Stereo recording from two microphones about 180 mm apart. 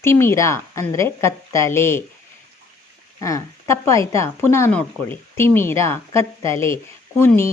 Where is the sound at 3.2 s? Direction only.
15° left (ahead or behind).